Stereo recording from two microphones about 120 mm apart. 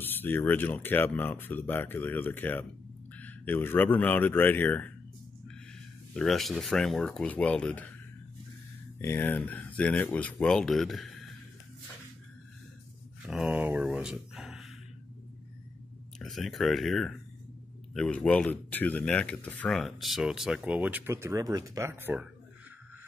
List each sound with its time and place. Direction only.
0.0 s speech: 15° left (ahead or behind)
6.1 s speech: centre (ahead or behind)
9.0 s speech: 15° left (ahead or behind)
13.3 s speech: 5° right (ahead or behind)
16.2 s speech: centre (ahead or behind)
19.8 s speech: centre (ahead or behind)
21.1 s speech: 25° right (ahead or behind)